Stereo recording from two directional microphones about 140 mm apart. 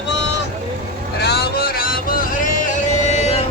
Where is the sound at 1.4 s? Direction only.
90° left; by 2.7 s 75° left (ahead or behind).